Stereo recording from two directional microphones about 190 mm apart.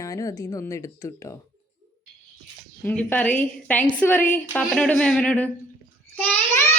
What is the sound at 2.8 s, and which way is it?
Speech, 10° left (ahead or behind).